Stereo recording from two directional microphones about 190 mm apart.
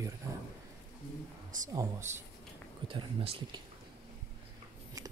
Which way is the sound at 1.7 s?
15° right (ahead or behind).